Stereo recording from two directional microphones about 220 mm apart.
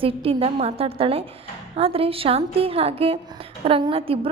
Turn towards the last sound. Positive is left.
turn(degrees=-25)  # may be behind; listen again after turning